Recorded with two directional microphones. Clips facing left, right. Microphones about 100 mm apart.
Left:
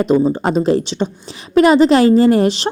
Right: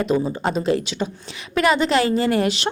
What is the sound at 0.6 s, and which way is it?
A woman's voice, 35° left (ahead or behind).